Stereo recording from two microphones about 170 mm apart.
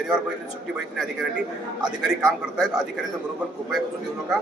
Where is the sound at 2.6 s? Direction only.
5° right (ahead or behind).